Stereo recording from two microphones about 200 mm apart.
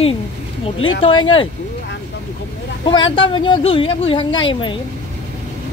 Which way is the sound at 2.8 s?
25° left (ahead or behind).